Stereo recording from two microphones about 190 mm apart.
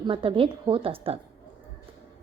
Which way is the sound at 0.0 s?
30° right (ahead or behind).